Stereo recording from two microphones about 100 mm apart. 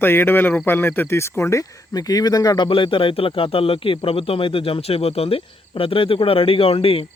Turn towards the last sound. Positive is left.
turn(degrees=70)  # may be behind; listen again after turning